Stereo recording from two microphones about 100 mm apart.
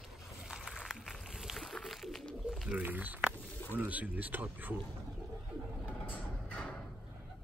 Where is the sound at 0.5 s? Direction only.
5° right (ahead or behind).